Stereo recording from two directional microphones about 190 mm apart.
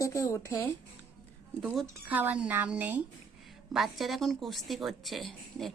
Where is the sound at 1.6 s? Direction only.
Centre (ahead or behind).